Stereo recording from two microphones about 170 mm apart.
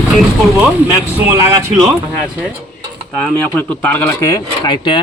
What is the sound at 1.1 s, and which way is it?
Speech, 15° right (ahead or behind).